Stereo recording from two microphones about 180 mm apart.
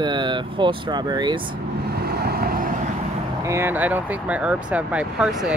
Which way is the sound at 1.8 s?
60° right (ahead or behind).